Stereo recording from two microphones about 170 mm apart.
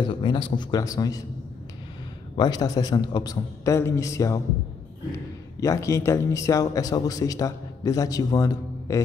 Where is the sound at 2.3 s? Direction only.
25° left (ahead or behind).